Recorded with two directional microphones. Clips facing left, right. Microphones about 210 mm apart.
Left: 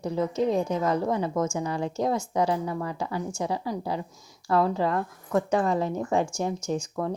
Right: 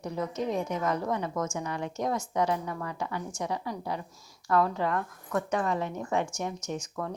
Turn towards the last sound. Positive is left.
turn(degrees=30)  # may be behind; listen again after turning